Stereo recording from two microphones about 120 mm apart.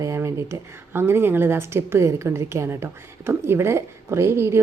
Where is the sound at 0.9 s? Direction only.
20° right (ahead or behind).